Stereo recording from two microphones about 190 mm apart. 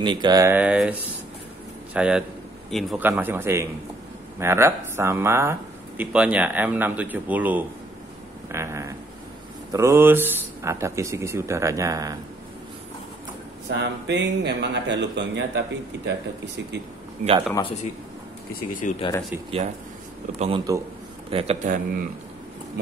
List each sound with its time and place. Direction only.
0.0 s speech: 25° right (ahead or behind); by 0.9 s 5° right (ahead or behind)
2.0 s speech: 5° right (ahead or behind)
13.7 s speech: 65° right (ahead or behind)
17.2 s speech: 40° right (ahead or behind)
18.7 s speech: 45° left (ahead or behind)
20.3 s a man's voice: 30° right (ahead or behind)
21.6 s a man's voice: 45° right (ahead or behind)